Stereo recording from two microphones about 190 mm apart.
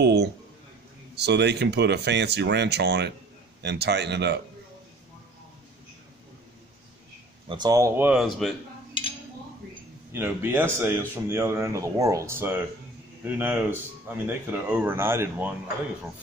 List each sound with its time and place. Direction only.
0.0 s a sound: 60° right (ahead or behind)
1.1 s speech: 60° right (ahead or behind)
7.4 s a man's voice: 20° right (ahead or behind); by 8.5 s centre (ahead or behind)
10.1 s a man's voice: 10° right (ahead or behind)